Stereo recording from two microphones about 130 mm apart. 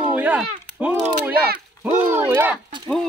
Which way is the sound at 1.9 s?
15° right (ahead or behind).